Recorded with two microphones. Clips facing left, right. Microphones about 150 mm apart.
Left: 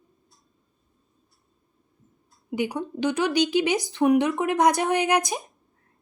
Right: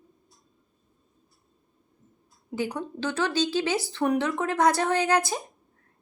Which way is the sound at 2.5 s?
15° left (ahead or behind).